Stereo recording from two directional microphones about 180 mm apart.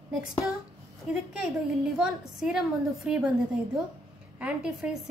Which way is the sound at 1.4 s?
5° right (ahead or behind).